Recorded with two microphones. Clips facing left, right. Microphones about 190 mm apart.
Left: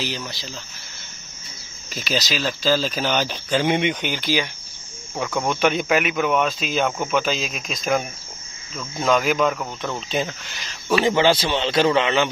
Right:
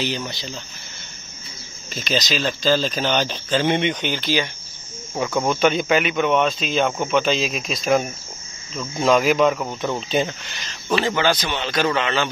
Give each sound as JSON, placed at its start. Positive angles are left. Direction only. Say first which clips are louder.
{"t": 0.0, "sound": "speech", "louder": "right 3 dB", "side_deg": 0}
{"t": 2.0, "sound": "speech", "louder": "right 2 dB", "side_deg": 5}
{"t": 5.1, "sound": "speech", "louder": "right 3 dB", "side_deg": -5}
{"t": 11.1, "sound": "a man's voice", "louder": "left 3 dB", "side_deg": 25}